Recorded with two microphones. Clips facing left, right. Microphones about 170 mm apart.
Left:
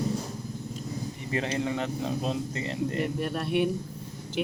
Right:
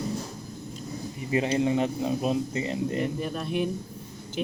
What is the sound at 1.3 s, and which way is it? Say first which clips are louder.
Speech: right 5 dB; 20° right (ahead or behind).